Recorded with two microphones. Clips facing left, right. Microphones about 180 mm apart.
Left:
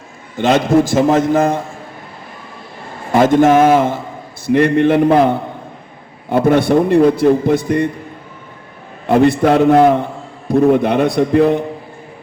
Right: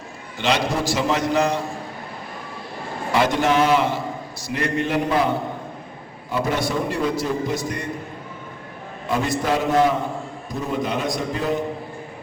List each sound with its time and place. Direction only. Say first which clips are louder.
0.3 s a man's voice: left 10 dB; 50° left (ahead or behind)
3.1 s a man's voice: left 9 dB; 50° left (ahead or behind)
9.0 s a man's voice: left 11 dB; 60° left (ahead or behind)